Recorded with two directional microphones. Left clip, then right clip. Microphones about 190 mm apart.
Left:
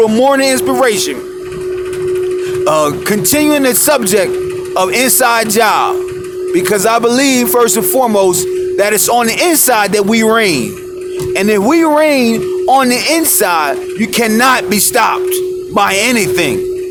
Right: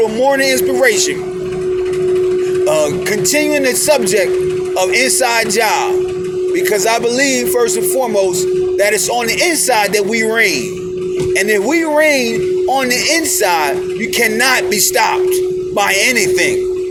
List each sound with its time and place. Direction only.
0.0 s speech: 35° left (ahead or behind)
2.6 s speech: 30° left (ahead or behind)